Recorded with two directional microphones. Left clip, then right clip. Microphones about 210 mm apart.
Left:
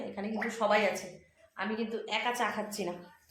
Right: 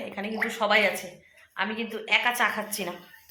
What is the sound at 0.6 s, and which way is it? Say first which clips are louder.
Speech: right 4 dB; 30° right (ahead or behind).